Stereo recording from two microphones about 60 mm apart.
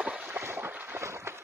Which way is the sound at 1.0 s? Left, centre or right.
Right.